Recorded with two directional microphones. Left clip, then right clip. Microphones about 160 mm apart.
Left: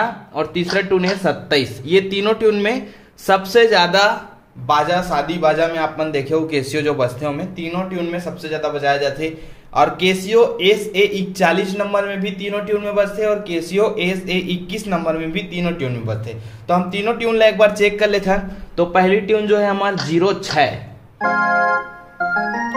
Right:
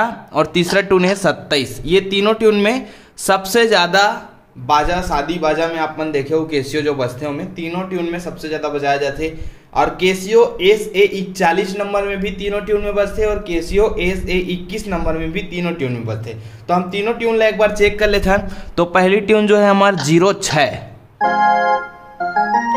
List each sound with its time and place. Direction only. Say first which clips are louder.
0.0 s a man's voice: right 4 dB; 30° right (ahead or behind); by 17.9 s 5° left (ahead or behind)
17.9 s a man's voice: right 1 dB; 10° right (ahead or behind)
18.8 s a man's voice: right 1 dB; 35° right (ahead or behind)
21.2 s a man's voice: right 2 dB; centre (ahead or behind)
22.3 s music: right 5 dB; centre (ahead or behind)